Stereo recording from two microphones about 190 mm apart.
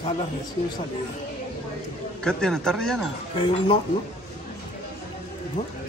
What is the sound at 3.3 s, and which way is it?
Speech, 25° left (ahead or behind).